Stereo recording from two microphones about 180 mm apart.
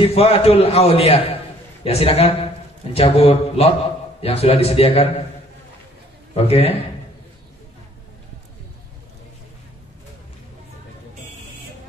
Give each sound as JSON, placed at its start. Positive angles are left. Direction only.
{"t": 0.0, "sound": "a man's voice", "side_deg": 35}
{"t": 6.3, "sound": "a man's voice", "side_deg": 35}